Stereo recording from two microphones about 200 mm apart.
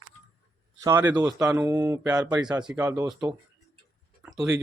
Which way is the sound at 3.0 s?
20° right (ahead or behind).